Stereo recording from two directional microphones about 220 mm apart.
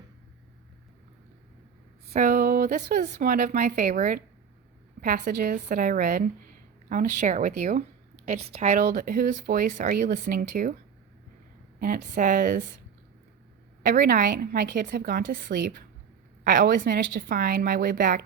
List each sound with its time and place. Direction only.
2.1 s speech: 40° right (ahead or behind)
11.8 s speech: 35° right (ahead or behind)
13.8 s a woman's voice: 45° right (ahead or behind)